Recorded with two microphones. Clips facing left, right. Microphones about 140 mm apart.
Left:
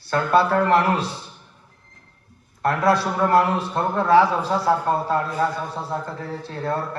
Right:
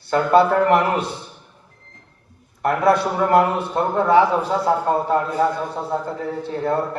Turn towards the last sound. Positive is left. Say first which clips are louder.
# right 4 dB
turn(degrees=-20)  # may be behind; listen again after turning